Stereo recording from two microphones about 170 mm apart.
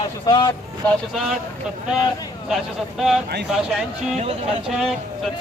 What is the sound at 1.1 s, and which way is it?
Speech, centre (ahead or behind).